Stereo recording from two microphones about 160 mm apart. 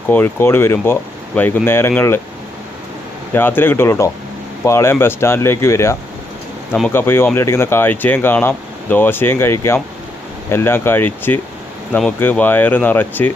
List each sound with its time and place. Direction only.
0.1 s speech: 15° left (ahead or behind)
3.3 s speech: 15° left (ahead or behind)